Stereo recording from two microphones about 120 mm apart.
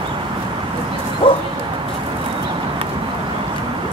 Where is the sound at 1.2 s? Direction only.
45° left (ahead or behind).